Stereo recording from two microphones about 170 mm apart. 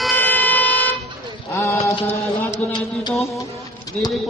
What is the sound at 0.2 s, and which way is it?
Vehicle, 10° left (ahead or behind).